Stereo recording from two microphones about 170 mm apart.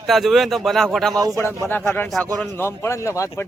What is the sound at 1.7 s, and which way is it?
Speech, 10° left (ahead or behind).